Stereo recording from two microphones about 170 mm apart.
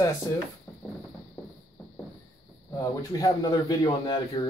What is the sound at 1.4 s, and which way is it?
Clip-clop, 10° left (ahead or behind).